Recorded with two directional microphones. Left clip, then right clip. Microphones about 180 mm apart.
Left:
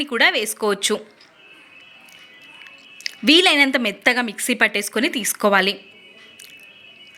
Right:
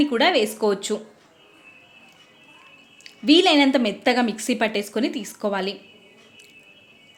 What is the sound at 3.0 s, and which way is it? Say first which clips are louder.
A woman's voice: left 2 dB; 10° left (ahead or behind).